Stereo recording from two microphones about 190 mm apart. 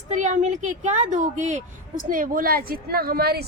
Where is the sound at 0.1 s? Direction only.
40° right (ahead or behind).